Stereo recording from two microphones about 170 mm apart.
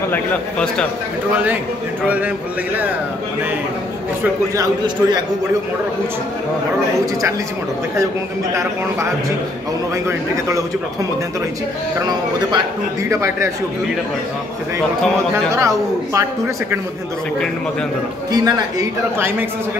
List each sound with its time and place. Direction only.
0.1 s a man's voice: 5° left (ahead or behind)
1.3 s speech: 10° right (ahead or behind)
4.2 s a man's voice: 25° right (ahead or behind)
10.0 s speech: 20° right (ahead or behind)
12.1 s a man's voice: 25° right (ahead or behind)
15.3 s speech: 15° right (ahead or behind)
18.3 s a man's voice: 20° right (ahead or behind)